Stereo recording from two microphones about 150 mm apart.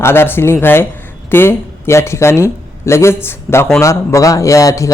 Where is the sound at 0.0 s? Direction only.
15° left (ahead or behind).